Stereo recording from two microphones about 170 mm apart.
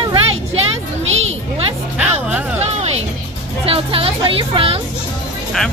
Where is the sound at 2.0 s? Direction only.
10° right (ahead or behind).